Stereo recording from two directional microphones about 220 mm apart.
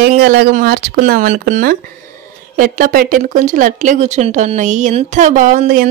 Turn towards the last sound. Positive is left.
turn(degrees=-40)  # may be behind; listen again after turning